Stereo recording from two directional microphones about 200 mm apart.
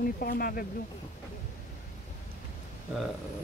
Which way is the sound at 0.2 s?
45° left (ahead or behind).